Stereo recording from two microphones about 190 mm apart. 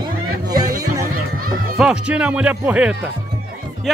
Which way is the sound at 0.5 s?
20° right (ahead or behind).